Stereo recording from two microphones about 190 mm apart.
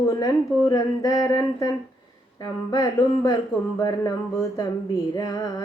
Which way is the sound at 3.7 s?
20° left (ahead or behind).